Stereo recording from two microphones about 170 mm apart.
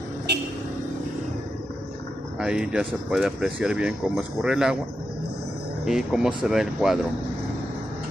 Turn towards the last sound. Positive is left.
turn(degrees=0)  # may be behind; listen again after turning